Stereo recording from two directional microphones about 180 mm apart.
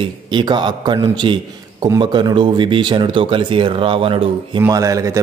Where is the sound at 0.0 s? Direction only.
25° right (ahead or behind).